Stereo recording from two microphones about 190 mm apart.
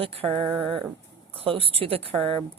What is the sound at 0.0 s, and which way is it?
Speech, 30° right (ahead or behind).